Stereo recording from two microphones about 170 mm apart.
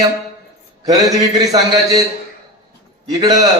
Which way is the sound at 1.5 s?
20° right (ahead or behind).